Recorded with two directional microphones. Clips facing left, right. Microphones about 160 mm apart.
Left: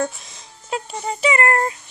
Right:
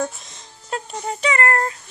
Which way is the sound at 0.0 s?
Centre (ahead or behind).